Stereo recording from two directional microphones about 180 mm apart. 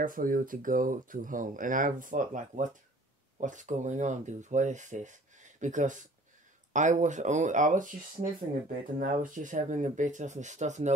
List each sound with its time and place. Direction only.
0.0 s speech: 50° right (ahead or behind)